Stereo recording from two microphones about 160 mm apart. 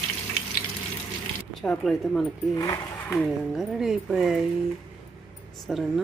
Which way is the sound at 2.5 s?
20° left (ahead or behind).